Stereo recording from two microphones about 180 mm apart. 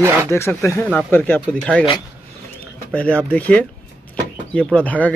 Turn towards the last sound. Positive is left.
turn(degrees=10)  # may be behind; listen again after turning